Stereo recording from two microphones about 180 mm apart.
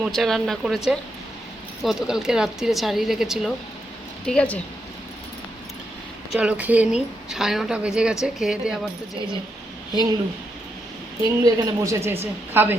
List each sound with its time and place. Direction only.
0.0 s speech: centre (ahead or behind)
6.3 s speech: 5° right (ahead or behind)
11.2 s a woman's voice: 15° right (ahead or behind)